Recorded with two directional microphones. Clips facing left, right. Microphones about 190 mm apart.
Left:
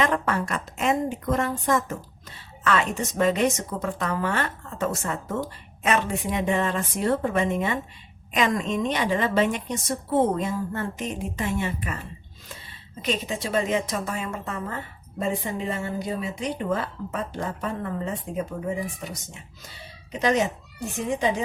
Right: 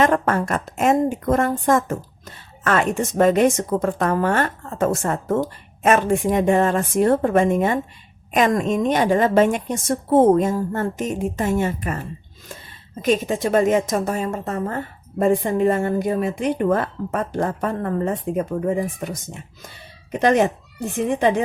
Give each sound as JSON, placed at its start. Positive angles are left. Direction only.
{"t": 0.0, "sound": "a woman's voice", "side_deg": -45}